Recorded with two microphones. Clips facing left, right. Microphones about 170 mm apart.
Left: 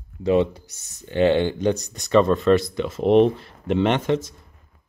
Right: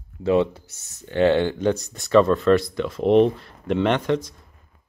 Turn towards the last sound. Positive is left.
turn(degrees=25)  # may be behind; listen again after turning